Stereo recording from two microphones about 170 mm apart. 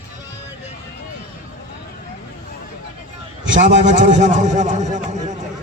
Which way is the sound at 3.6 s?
45° right (ahead or behind).